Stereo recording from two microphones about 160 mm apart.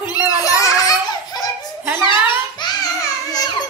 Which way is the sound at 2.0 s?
30° left (ahead or behind).